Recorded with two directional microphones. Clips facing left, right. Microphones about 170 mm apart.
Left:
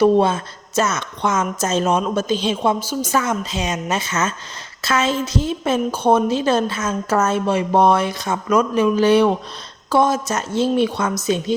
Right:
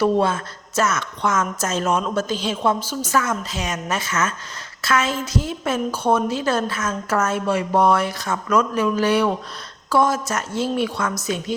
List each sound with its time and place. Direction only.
0.0 s a woman's voice: 20° left (ahead or behind)